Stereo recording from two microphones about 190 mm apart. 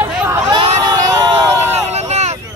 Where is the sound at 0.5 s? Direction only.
25° right (ahead or behind).